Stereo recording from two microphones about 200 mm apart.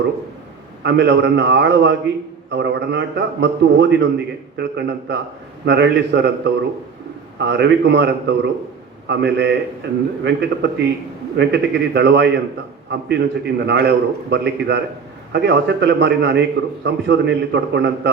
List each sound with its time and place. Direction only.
0.8 s a man's voice: 60° right (ahead or behind)